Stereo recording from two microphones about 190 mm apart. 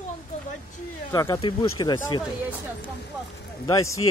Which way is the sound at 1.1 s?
20° left (ahead or behind).